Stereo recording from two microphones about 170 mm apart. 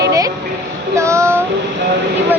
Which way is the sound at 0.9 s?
15° right (ahead or behind).